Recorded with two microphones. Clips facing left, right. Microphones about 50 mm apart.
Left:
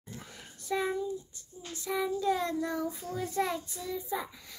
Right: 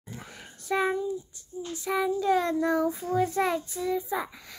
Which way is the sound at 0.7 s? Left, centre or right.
Right.